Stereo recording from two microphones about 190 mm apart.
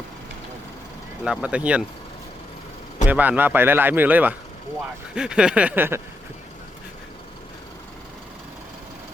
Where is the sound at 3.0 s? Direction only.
10° right (ahead or behind).